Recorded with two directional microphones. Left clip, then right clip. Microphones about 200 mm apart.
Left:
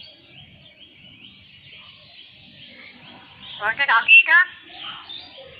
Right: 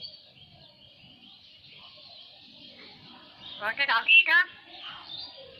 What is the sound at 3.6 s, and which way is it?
Speech, 20° right (ahead or behind).